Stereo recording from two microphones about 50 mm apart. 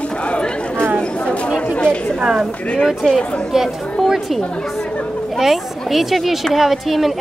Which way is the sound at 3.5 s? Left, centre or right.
Centre.